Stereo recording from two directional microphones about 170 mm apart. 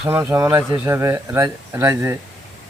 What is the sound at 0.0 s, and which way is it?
Speech, 10° right (ahead or behind).